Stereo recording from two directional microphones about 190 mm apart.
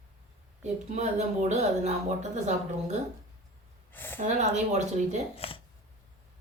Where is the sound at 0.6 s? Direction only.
35° right (ahead or behind).